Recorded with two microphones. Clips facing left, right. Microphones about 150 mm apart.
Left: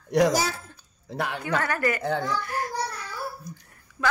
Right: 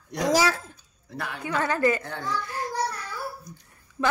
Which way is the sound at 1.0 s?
90° left.